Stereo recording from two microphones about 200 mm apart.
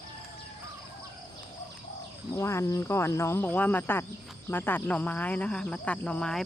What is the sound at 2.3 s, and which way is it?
Speech, 15° left (ahead or behind).